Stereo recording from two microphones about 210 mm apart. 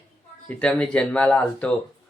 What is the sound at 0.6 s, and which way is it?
Speech, 5° left (ahead or behind).